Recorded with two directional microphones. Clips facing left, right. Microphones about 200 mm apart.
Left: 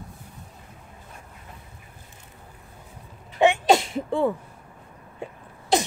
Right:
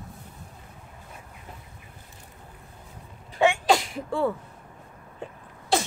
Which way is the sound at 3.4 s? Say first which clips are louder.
Left 3 dB; 20° left (ahead or behind).